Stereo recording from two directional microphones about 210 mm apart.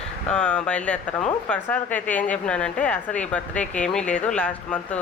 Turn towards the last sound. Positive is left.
turn(degrees=5)  # may be behind; listen again after turning